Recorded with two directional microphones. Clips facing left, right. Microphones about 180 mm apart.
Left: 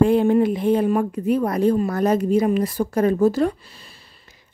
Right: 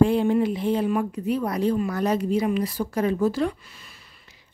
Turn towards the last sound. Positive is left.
turn(degrees=40)  # may be behind; listen again after turning